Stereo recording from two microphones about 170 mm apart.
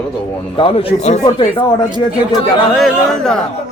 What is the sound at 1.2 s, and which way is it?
Speech, 25° left (ahead or behind).